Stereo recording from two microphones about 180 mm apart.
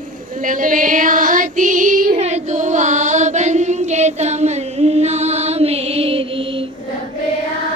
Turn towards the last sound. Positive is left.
turn(degrees=-30)  # may be behind; listen again after turning